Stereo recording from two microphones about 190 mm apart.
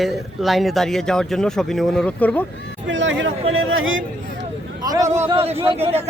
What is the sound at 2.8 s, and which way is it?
Speech, 75° right (ahead or behind).